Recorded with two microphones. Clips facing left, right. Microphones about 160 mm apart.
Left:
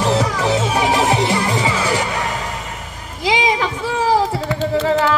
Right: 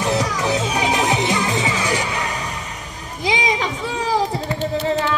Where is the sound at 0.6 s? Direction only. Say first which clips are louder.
Left 4 dB; 25° left (ahead or behind).